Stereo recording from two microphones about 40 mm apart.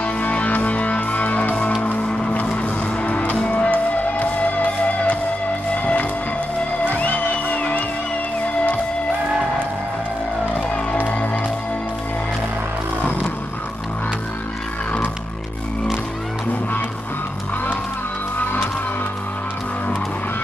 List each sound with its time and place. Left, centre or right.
0.0 s music: left
2.0 s music: left
2.6 s music: left
6.9 s music: left
11.0 s music: left
18.4 s music: left